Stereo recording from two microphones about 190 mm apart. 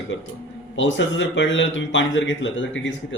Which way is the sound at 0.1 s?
75° left (ahead or behind).